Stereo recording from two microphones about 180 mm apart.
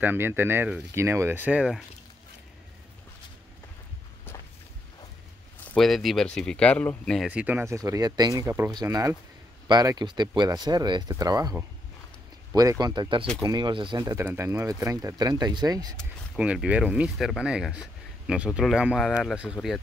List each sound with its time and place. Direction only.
0.0 s speech: 10° right (ahead or behind)
5.8 s speech: centre (ahead or behind)
7.2 s speech: 10° right (ahead or behind)
16.0 s speech: 5° right (ahead or behind)